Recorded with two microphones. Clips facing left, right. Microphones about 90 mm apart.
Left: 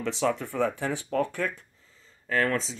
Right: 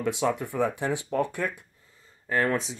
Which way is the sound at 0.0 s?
15° right (ahead or behind).